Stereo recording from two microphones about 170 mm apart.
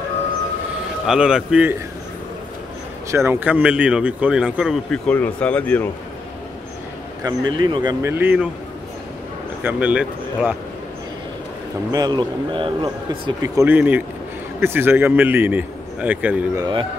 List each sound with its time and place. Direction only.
1.0 s a man's voice: 5° right (ahead or behind)
3.1 s speech: 15° right (ahead or behind)
5.0 s speech: 10° left (ahead or behind)
7.2 s speech: 25° right (ahead or behind)
8.1 s speech: 10° right (ahead or behind)
9.6 s speech: 10° right (ahead or behind)
11.9 s speech: 25° right (ahead or behind)
13.4 s speech: 15° right (ahead or behind)
16.5 s speech: 25° right (ahead or behind)